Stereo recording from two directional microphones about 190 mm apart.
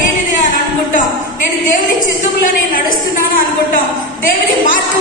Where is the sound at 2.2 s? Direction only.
45° left (ahead or behind).